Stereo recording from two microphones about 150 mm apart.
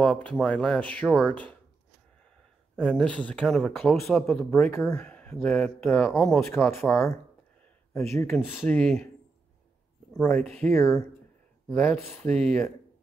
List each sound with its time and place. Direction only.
0.0 s speech: 5° left (ahead or behind)
2.7 s speech: 5° right (ahead or behind)
3.1 s speech: 10° left (ahead or behind)
3.7 s speech: 15° left (ahead or behind)
6.1 s speech: 5° left (ahead or behind)
6.4 s speech: 15° left (ahead or behind)
10.2 s speech: 15° left (ahead or behind)
11.8 s speech: 5° left (ahead or behind)